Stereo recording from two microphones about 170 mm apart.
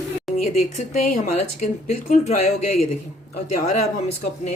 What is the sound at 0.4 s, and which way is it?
Speech, 50° left (ahead or behind).